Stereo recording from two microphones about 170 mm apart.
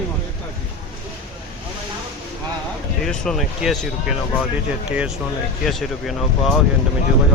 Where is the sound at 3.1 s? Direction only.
Centre (ahead or behind).